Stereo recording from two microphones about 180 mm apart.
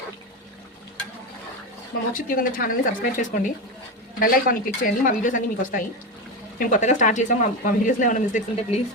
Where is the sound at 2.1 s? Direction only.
50° left (ahead or behind).